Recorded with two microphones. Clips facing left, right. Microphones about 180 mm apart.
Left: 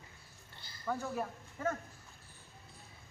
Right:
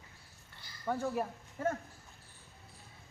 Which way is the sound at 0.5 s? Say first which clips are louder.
Even; 30° left (ahead or behind).